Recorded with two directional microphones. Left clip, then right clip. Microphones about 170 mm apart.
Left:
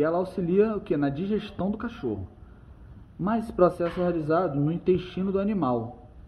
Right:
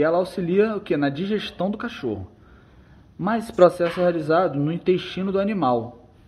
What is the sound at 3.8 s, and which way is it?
Speech, 60° right (ahead or behind).